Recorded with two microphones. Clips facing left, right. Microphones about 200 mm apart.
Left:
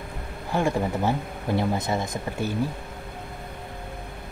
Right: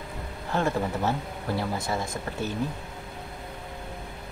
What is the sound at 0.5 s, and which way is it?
Speech, 15° left (ahead or behind).